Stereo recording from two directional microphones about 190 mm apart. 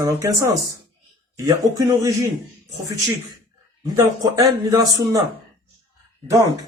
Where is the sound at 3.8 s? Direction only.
20° right (ahead or behind).